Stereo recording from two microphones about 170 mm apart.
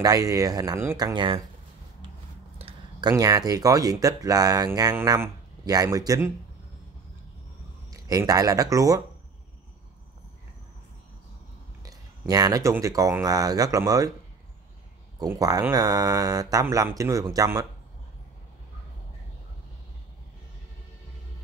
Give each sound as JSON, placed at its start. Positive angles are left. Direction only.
{"t": 0.0, "sound": "speech", "side_deg": -20}
{"t": 2.6, "sound": "speech", "side_deg": -25}
{"t": 7.9, "sound": "speech", "side_deg": -20}
{"t": 11.8, "sound": "speech", "side_deg": -20}
{"t": 15.1, "sound": "speech", "side_deg": -20}